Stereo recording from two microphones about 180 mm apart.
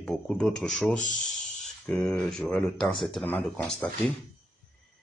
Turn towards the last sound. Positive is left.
turn(degrees=5)  # may be behind; listen again after turning